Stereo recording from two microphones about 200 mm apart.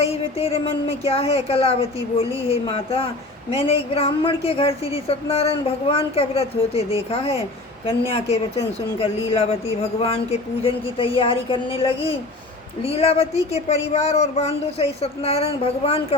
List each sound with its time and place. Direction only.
0.0 s a woman's voice: 30° left (ahead or behind)